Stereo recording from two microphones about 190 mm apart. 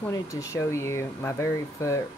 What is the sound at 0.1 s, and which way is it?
Speech, 15° left (ahead or behind).